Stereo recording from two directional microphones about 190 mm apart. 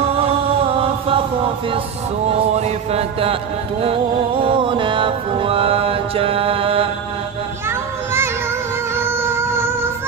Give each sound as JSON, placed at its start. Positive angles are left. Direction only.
{"t": 0.2, "sound": "mantra", "side_deg": -30}
{"t": 2.3, "sound": "music", "side_deg": -35}
{"t": 8.9, "sound": "music", "side_deg": -10}